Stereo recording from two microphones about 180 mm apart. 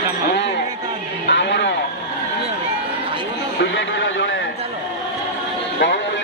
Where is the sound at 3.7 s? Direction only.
90° left.